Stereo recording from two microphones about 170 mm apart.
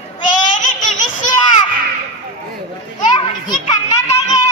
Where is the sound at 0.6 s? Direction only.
50° left (ahead or behind).